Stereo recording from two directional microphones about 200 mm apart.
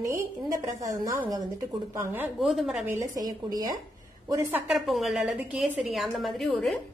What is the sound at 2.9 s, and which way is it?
A woman's voice, 20° right (ahead or behind).